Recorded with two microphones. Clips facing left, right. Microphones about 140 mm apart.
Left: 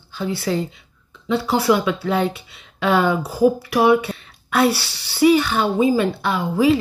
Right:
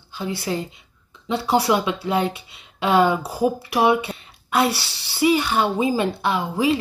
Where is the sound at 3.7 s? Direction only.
20° right (ahead or behind).